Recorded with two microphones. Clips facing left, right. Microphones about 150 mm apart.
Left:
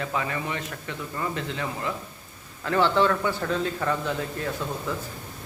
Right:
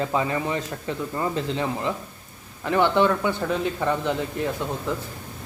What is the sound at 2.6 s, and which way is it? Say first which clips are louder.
Speech: right 2 dB; 15° right (ahead or behind).